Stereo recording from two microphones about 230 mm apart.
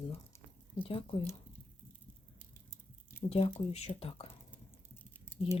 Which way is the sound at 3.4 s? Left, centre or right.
Left.